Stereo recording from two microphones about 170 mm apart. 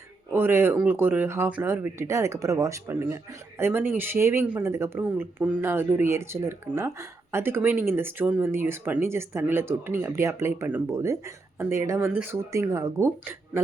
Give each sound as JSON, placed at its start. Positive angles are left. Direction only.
{"t": 0.3, "sound": "speech", "side_deg": -15}